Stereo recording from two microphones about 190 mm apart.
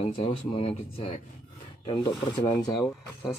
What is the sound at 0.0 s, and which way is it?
Speech, 35° left (ahead or behind).